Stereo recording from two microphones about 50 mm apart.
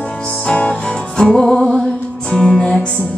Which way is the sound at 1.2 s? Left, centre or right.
Centre.